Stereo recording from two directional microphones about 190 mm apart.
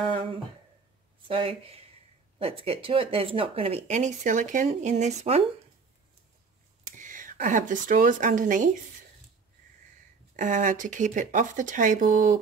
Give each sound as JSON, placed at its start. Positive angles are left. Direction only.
{"t": 1.2, "sound": "speech", "side_deg": -30}
{"t": 6.8, "sound": "speech", "side_deg": -45}
{"t": 10.3, "sound": "speech", "side_deg": -40}